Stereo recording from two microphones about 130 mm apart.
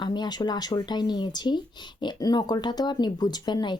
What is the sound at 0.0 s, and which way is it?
Speech, 35° left (ahead or behind).